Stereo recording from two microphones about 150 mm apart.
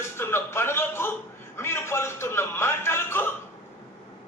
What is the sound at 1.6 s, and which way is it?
Music, 15° left (ahead or behind).